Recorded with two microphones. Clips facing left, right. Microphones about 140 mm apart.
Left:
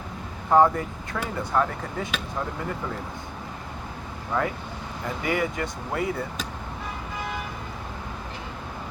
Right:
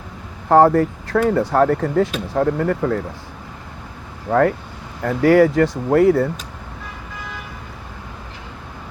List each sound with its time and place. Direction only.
0.4 s speech: 70° right (ahead or behind)
4.3 s speech: 65° right (ahead or behind)